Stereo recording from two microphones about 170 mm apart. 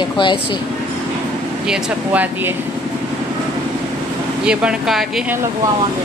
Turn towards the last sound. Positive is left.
turn(degrees=-5)  # may be behind; listen again after turning